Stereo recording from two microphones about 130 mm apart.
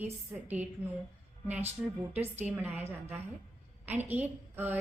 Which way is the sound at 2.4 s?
10° right (ahead or behind).